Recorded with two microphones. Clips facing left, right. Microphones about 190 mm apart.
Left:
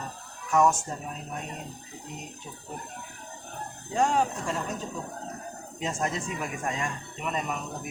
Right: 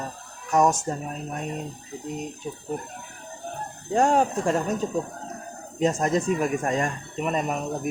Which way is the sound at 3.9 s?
45° right (ahead or behind).